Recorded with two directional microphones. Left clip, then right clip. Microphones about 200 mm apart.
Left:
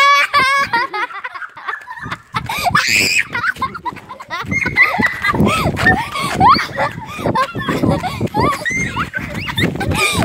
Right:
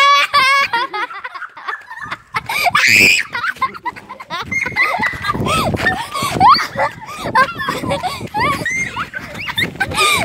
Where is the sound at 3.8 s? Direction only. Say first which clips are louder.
Even; centre (ahead or behind).